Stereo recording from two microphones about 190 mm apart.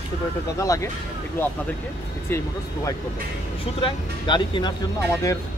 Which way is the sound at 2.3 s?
15° left (ahead or behind).